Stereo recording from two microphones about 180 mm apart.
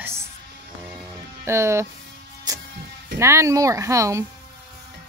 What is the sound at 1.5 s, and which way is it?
Speech, 15° right (ahead or behind).